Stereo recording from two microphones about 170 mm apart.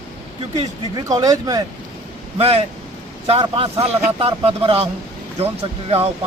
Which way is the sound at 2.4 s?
35° right (ahead or behind).